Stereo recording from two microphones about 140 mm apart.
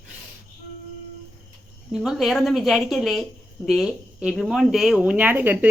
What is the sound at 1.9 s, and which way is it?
Speech, 5° right (ahead or behind).